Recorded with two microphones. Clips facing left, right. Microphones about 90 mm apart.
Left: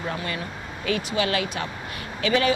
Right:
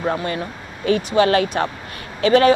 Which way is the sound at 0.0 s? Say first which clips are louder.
Right 7 dB; 35° right (ahead or behind).